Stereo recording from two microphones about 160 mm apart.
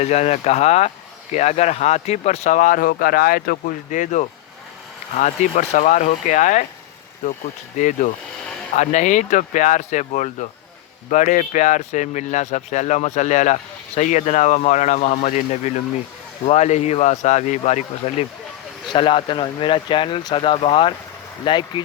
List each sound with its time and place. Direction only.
0.0 s speech: 45° left (ahead or behind)
18.9 s speech: 30° left (ahead or behind)